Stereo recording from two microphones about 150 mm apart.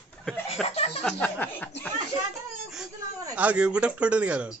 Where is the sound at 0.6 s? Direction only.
45° left (ahead or behind).